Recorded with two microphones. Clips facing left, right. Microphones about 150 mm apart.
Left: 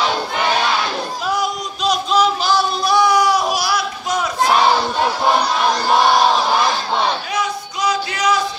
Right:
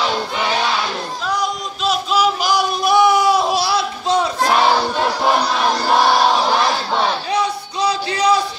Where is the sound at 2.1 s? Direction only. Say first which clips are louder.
Left 1 dB; 10° right (ahead or behind); by 4.3 s 30° right (ahead or behind).